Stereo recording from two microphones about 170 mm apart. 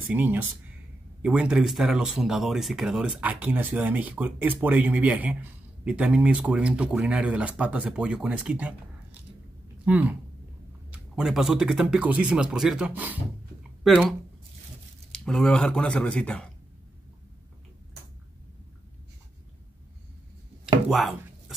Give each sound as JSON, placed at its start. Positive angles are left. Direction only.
{"t": 0.0, "sound": "speech", "side_deg": -10}
{"t": 9.8, "sound": "speech", "side_deg": -10}
{"t": 11.1, "sound": "a man's voice", "side_deg": 0}
{"t": 20.6, "sound": "chopping", "side_deg": 0}